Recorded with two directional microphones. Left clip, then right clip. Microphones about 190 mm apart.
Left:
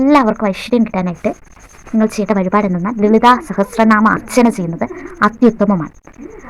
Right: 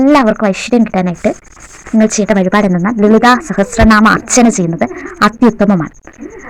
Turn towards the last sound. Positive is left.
turn(degrees=-20)  # may be behind; listen again after turning